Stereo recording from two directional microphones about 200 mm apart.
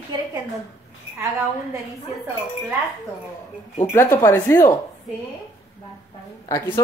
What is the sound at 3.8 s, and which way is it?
Speech, 15° left (ahead or behind).